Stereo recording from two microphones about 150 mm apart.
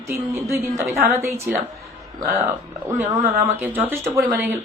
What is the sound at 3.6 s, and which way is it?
Speech, 15° right (ahead or behind).